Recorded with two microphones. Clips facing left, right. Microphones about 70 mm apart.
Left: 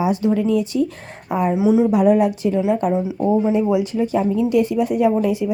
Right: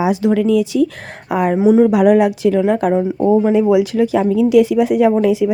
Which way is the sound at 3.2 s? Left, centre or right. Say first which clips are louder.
Right 5 dB; right.